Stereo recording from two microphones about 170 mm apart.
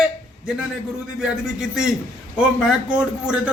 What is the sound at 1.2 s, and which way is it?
Speech, 5° right (ahead or behind).